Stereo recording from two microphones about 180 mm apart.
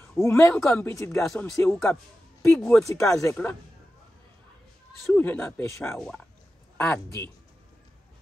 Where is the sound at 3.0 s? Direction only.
15° left (ahead or behind).